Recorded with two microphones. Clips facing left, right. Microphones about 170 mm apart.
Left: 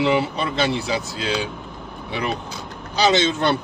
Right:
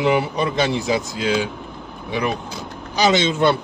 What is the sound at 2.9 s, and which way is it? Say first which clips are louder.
Speech: right 1 dB; 15° right (ahead or behind).